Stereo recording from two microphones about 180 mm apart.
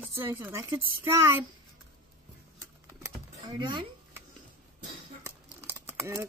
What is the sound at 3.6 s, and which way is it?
Speech, 25° right (ahead or behind).